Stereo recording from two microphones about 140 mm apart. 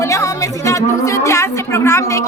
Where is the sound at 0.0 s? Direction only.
20° left (ahead or behind).